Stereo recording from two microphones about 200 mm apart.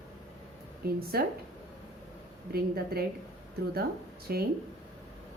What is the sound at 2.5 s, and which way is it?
Speech, 50° right (ahead or behind).